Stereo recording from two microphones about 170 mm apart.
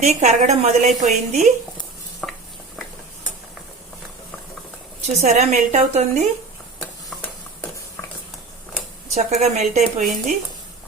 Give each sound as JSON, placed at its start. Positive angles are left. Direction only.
{"t": 0.0, "sound": "a woman's voice", "side_deg": -40}
{"t": 2.2, "sound": "stir", "side_deg": 5}
{"t": 5.0, "sound": "a woman's voice", "side_deg": -40}
{"t": 9.1, "sound": "a woman's voice", "side_deg": -40}